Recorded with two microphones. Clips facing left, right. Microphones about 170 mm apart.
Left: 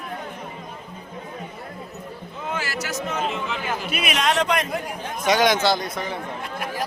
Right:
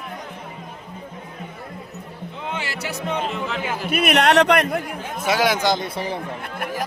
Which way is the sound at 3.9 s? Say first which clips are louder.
Right 7 dB; 60° right (ahead or behind).